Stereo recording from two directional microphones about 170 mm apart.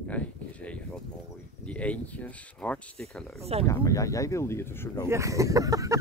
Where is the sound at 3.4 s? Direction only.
35° right (ahead or behind).